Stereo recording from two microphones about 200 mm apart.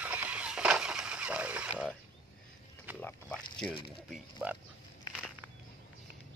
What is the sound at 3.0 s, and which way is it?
Pig, 10° left (ahead or behind).